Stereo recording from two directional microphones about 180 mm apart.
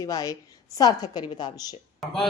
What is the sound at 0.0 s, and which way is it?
A woman's voice, 20° left (ahead or behind).